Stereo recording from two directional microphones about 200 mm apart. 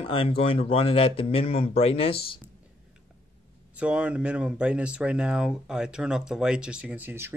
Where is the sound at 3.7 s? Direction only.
5° right (ahead or behind).